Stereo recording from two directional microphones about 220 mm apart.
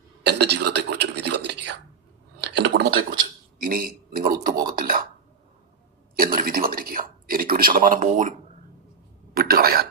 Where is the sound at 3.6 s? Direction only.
40° right (ahead or behind).